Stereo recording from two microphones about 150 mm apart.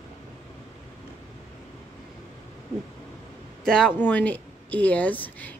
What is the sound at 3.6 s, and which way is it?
Speech, 5° left (ahead or behind).